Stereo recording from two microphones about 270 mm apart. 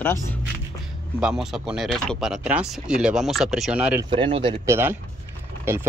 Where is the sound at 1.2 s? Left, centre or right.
Centre.